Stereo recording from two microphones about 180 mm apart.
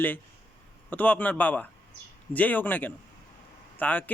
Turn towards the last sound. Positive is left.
turn(degrees=10)  # may be behind; listen again after turning